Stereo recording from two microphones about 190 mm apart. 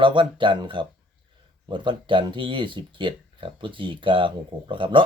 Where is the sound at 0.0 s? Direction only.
25° right (ahead or behind).